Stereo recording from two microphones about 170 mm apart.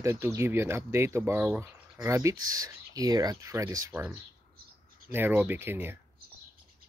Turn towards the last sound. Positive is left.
turn(degrees=-10)  # may be behind; listen again after turning